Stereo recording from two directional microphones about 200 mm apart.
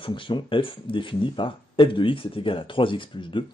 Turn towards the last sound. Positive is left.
turn(degrees=25)  # may be behind; listen again after turning